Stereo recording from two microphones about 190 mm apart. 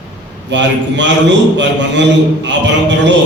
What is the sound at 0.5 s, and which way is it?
A man's voice, 70° right (ahead or behind).